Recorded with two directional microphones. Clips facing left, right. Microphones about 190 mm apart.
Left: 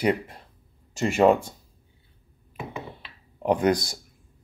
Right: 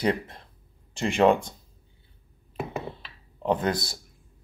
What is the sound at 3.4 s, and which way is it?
Speech, 15° left (ahead or behind).